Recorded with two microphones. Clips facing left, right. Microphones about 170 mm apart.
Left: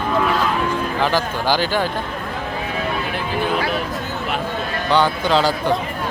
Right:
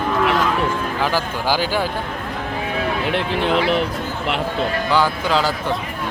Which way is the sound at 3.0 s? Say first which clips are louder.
Right 2 dB; 70° right (ahead or behind).